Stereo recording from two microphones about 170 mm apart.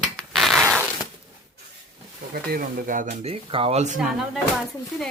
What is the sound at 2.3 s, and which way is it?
Speech, 60° right (ahead or behind).